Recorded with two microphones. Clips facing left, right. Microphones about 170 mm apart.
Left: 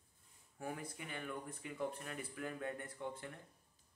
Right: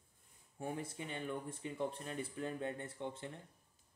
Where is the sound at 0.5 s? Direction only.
25° right (ahead or behind).